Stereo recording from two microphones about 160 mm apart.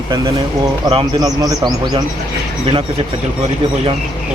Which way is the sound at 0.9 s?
25° right (ahead or behind).